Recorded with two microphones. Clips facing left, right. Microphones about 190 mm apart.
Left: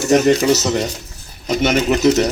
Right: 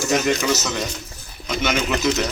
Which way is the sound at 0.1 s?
35° left (ahead or behind).